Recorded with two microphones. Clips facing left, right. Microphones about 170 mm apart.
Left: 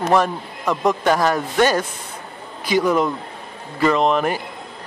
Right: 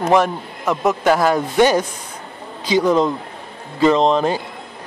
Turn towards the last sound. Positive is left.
turn(degrees=-25)  # may be behind; listen again after turning